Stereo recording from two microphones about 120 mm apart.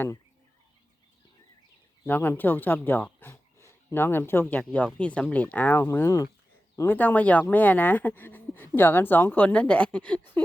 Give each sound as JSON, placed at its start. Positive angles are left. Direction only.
{"t": 2.0, "sound": "speech", "side_deg": 15}